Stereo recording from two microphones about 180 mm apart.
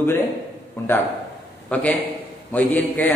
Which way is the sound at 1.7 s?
5° left (ahead or behind).